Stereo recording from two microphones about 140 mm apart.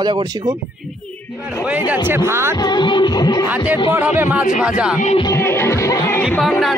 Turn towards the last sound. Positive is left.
turn(degrees=0)  # may be behind; listen again after turning